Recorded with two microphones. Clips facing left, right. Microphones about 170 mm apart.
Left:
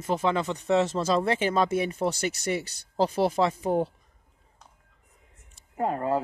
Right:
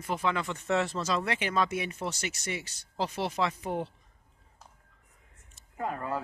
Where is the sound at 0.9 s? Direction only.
30° left (ahead or behind).